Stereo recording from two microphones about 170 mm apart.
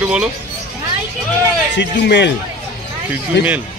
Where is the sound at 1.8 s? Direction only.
85° left.